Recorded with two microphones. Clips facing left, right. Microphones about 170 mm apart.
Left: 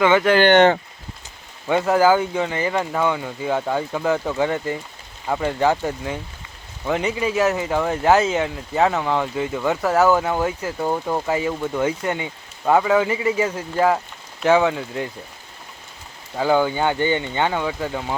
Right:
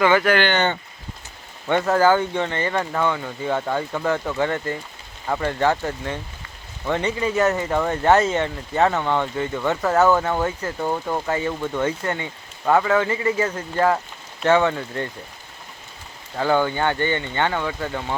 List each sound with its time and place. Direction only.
0.0 s speech: 15° left (ahead or behind)
0.4 s speech: 80° left
1.6 s speech: 5° left (ahead or behind)
16.3 s speech: 10° left (ahead or behind)